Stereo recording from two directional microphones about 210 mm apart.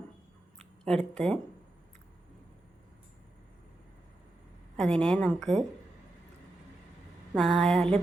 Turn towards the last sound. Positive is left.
turn(degrees=0)  # may be behind; listen again after turning